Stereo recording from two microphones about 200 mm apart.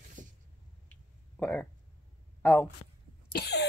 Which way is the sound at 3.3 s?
55° left (ahead or behind).